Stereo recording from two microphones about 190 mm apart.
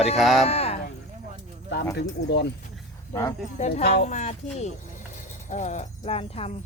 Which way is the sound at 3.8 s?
55° left (ahead or behind).